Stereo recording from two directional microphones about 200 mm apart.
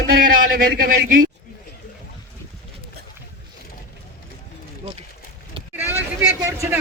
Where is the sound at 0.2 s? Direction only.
45° right (ahead or behind).